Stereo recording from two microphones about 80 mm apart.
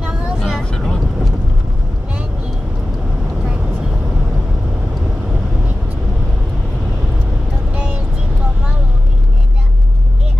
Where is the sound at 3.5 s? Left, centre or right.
Centre.